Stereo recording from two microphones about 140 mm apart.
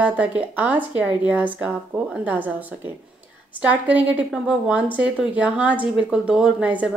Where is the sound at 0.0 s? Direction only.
10° right (ahead or behind).